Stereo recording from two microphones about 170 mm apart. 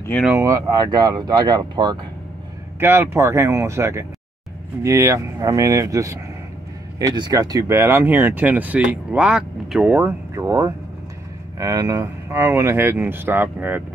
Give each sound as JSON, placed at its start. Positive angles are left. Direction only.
{"t": 0.3, "sound": "speech", "side_deg": -20}
{"t": 2.8, "sound": "speech", "side_deg": -15}